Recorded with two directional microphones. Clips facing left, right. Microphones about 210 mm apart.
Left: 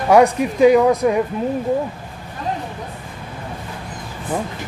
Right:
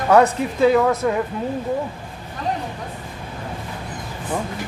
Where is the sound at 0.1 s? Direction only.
15° left (ahead or behind).